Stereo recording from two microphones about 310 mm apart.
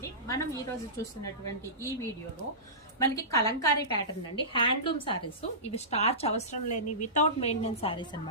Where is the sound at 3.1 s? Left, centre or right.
Centre.